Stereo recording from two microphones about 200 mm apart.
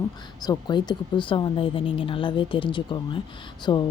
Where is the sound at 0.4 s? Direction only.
20° left (ahead or behind).